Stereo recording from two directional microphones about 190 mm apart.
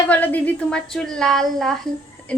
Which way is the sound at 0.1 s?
10° left (ahead or behind).